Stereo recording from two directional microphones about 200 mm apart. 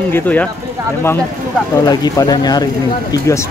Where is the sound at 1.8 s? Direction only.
20° left (ahead or behind).